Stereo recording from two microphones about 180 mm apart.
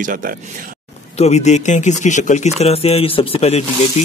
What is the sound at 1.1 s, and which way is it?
Speech, 35° left (ahead or behind).